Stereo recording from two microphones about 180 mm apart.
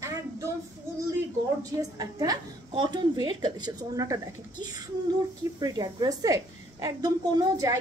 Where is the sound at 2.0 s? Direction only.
20° right (ahead or behind).